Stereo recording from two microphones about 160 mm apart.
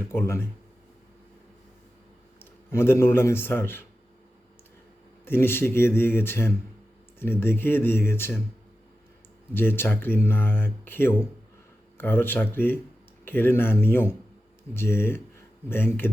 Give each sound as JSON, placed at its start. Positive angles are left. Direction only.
{"t": 0.1, "sound": "speech", "side_deg": 15}
{"t": 2.4, "sound": "a man's voice", "side_deg": 15}
{"t": 5.2, "sound": "speech", "side_deg": 15}
{"t": 9.6, "sound": "speech", "side_deg": 15}